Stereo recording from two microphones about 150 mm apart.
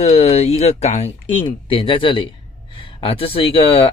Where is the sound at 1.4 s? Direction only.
35° left (ahead or behind).